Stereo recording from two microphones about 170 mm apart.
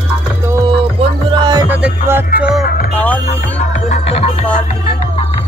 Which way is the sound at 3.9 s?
35° left (ahead or behind).